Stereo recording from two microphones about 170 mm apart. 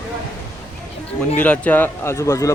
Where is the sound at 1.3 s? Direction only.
10° left (ahead or behind).